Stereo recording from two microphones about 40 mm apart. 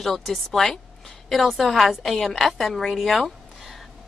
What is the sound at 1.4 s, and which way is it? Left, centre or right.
A woman's voice, centre.